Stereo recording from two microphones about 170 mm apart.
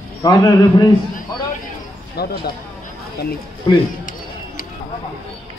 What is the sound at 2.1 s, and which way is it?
Speech, 65° left (ahead or behind).